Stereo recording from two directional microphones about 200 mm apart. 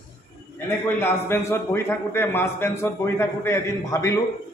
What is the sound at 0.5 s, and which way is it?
A man's voice, 10° left (ahead or behind).